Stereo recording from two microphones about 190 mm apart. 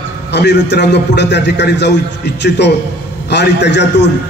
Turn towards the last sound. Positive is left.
turn(degrees=65)  # may be behind; listen again after turning